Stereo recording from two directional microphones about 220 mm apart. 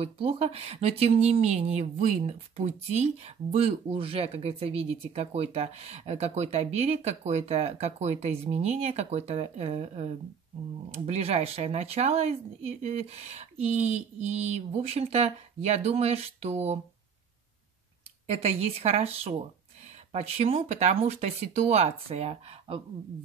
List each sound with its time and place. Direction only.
0.0 s speech: 25° right (ahead or behind)
18.2 s speech: 30° right (ahead or behind)